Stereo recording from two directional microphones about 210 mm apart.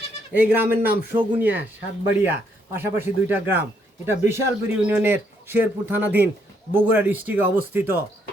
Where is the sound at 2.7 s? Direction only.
10° right (ahead or behind).